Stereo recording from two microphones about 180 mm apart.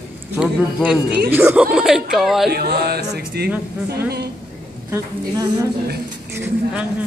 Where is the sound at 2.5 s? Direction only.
60° right (ahead or behind).